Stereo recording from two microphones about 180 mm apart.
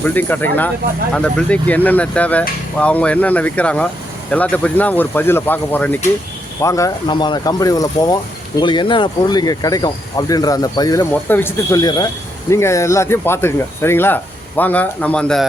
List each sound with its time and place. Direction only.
0.0 s speech: 10° left (ahead or behind)